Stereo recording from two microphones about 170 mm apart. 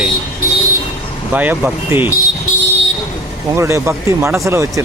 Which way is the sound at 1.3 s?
10° right (ahead or behind).